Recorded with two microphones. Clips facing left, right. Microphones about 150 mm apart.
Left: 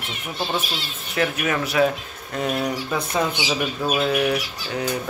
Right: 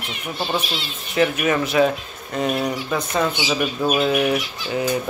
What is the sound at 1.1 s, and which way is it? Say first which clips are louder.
Speech: right 4 dB; centre (ahead or behind).